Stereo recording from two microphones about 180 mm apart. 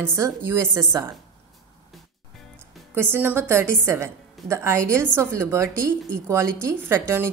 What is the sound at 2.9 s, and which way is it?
A woman's voice, 10° right (ahead or behind).